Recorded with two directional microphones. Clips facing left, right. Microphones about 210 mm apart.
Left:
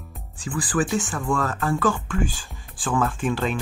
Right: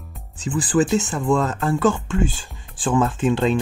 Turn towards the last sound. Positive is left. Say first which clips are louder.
# right 6 dB
turn(degrees=-25)  # may be behind; listen again after turning